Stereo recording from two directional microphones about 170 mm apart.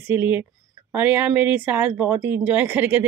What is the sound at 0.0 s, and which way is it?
A woman's voice, 10° right (ahead or behind).